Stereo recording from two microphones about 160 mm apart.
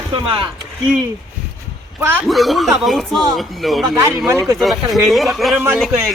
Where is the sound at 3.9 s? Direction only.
15° right (ahead or behind).